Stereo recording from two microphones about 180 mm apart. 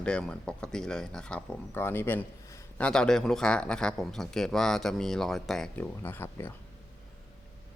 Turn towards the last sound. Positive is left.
turn(degrees=10)  # may be behind; listen again after turning